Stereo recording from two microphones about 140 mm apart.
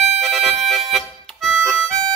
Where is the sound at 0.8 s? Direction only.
Centre (ahead or behind).